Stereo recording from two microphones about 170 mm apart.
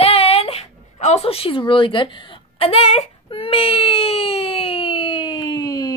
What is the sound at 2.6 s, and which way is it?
Speech, 35° left (ahead or behind).